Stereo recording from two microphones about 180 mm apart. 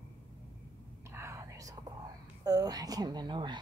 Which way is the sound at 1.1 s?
15° right (ahead or behind).